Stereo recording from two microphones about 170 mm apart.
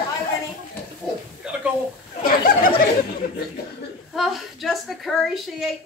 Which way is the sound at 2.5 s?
60° left (ahead or behind).